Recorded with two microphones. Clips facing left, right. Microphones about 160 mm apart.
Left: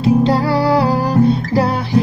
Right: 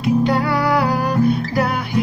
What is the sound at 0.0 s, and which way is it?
Music, 30° left (ahead or behind).